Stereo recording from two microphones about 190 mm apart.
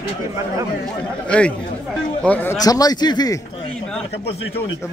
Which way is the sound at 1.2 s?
5° left (ahead or behind).